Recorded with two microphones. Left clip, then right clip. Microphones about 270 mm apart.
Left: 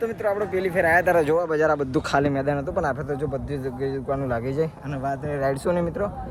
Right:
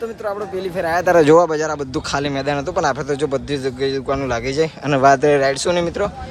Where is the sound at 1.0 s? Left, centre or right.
Right.